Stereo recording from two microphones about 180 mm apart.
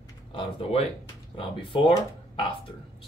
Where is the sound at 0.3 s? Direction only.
35° left (ahead or behind).